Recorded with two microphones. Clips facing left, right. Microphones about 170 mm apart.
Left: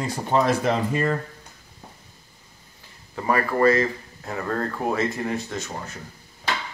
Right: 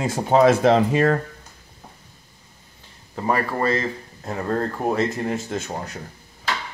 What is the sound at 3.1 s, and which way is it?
Speech, 20° right (ahead or behind).